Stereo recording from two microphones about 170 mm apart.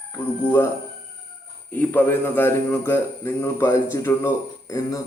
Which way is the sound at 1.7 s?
10° left (ahead or behind).